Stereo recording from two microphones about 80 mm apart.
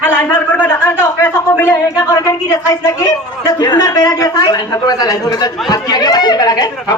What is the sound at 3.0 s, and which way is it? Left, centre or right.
Speech, left.